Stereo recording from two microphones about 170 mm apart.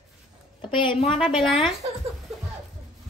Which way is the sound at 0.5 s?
30° left (ahead or behind).